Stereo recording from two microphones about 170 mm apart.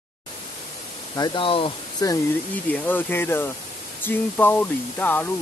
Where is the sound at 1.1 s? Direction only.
25° left (ahead or behind).